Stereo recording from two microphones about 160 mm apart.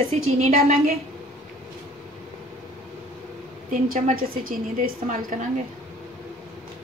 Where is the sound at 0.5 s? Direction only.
65° right (ahead or behind).